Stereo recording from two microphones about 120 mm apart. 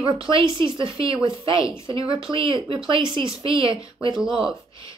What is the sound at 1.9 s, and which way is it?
Speech, 50° right (ahead or behind).